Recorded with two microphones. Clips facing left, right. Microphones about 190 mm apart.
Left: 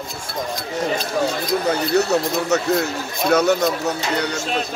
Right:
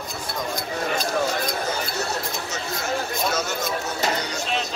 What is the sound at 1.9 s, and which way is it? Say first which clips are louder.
Speech: left 10 dB; 65° left (ahead or behind).